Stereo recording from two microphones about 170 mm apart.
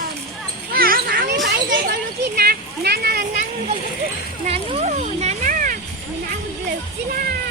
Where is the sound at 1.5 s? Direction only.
75° right (ahead or behind).